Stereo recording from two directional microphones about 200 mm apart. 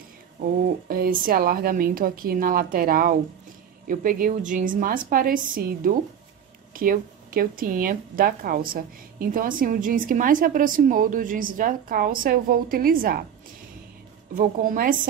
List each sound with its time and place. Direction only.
0.8 s a woman's voice: 45° right (ahead or behind)
14.3 s a woman's voice: 45° right (ahead or behind)